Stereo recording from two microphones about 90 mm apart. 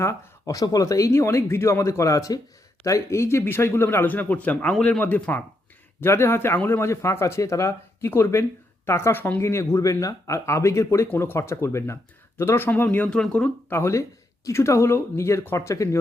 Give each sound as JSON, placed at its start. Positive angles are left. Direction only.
{"t": 0.0, "sound": "speech", "side_deg": 35}
{"t": 13.1, "sound": "speech", "side_deg": 10}
{"t": 13.7, "sound": "speech", "side_deg": 30}